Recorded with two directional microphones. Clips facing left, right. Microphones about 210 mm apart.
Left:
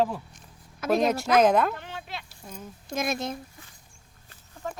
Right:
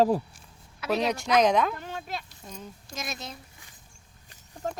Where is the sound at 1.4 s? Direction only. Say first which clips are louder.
Left 2 dB; 5° left (ahead or behind).